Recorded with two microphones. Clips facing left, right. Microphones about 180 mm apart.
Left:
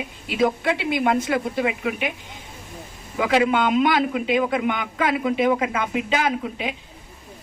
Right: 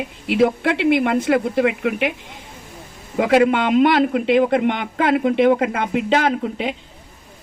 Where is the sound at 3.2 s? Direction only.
55° right (ahead or behind).